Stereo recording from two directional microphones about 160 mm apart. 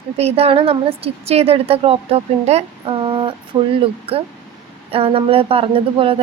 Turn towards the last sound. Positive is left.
turn(degrees=-35)  # may be behind; listen again after turning